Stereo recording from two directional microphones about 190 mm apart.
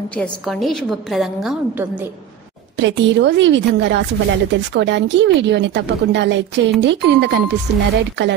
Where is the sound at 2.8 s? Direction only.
70° right (ahead or behind).